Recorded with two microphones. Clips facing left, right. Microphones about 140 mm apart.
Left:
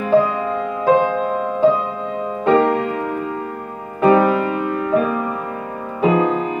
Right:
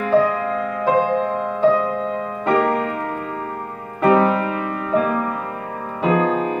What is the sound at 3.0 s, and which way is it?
Music, 10° left (ahead or behind).